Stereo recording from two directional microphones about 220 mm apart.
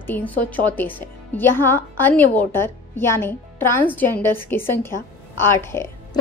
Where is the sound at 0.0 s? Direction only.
10° left (ahead or behind).